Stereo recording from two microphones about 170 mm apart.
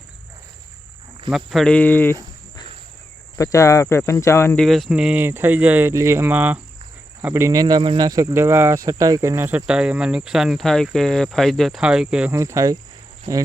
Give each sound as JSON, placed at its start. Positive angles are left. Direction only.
{"t": 1.5, "sound": "speech", "side_deg": 5}
{"t": 3.3, "sound": "speech", "side_deg": 20}
{"t": 4.6, "sound": "speech", "side_deg": 0}
{"t": 12.4, "sound": "speech", "side_deg": -20}